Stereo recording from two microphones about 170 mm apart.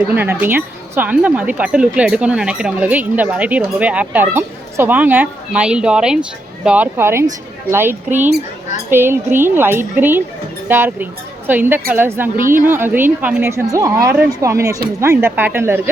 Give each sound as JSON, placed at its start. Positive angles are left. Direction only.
{"t": 0.1, "sound": "speech", "side_deg": -10}